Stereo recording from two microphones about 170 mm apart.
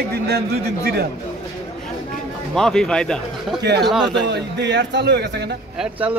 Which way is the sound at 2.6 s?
5° left (ahead or behind).